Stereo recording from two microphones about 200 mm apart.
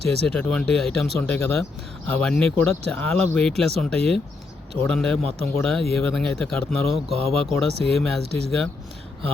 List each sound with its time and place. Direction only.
0.3 s speech: 5° left (ahead or behind)
7.1 s speech: 30° right (ahead or behind)
7.3 s speech: centre (ahead or behind)